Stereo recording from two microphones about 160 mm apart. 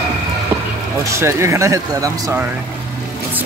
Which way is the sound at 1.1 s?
15° right (ahead or behind).